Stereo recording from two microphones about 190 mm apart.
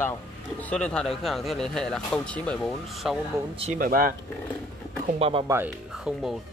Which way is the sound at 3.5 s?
35° right (ahead or behind).